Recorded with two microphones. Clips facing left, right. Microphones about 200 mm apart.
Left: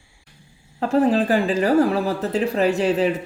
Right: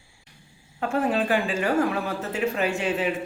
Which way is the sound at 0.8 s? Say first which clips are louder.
Left 6 dB; 35° left (ahead or behind).